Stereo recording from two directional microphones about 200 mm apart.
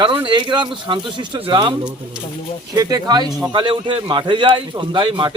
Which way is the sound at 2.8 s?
20° right (ahead or behind).